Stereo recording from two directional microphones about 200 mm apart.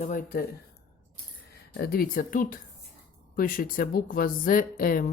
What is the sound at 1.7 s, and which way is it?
A woman's voice, 50° left (ahead or behind).